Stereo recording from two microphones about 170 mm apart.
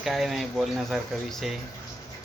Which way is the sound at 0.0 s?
Centre (ahead or behind).